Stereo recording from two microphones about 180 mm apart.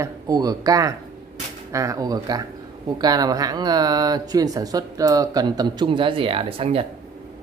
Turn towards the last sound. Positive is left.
turn(degrees=-30)  # may be behind; listen again after turning